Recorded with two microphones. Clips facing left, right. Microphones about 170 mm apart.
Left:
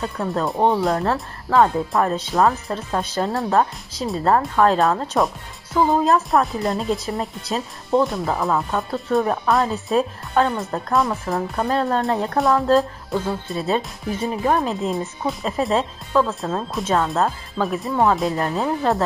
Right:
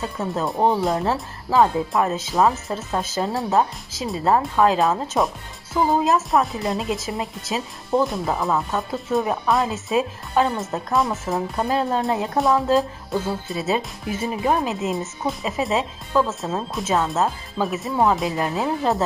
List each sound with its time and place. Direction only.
0.2 s speech: 5° right (ahead or behind)
11.3 s speech: 20° right (ahead or behind)
11.9 s speech: 5° right (ahead or behind)